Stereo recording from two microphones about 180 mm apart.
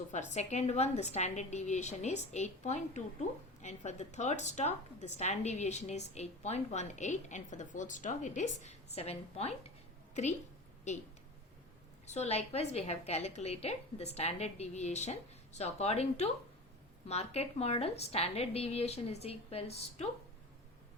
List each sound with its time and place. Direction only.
0.1 s a woman's voice: 40° left (ahead or behind)
10.9 s a woman's voice: 40° left (ahead or behind)
12.0 s a woman's voice: 35° left (ahead or behind)